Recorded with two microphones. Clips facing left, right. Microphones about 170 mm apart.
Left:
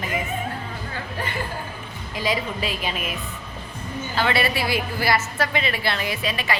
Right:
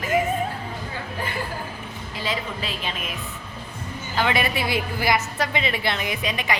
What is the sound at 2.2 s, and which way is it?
Speech, 10° left (ahead or behind).